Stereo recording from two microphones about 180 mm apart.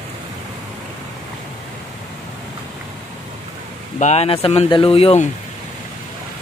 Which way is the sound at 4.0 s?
35° left (ahead or behind).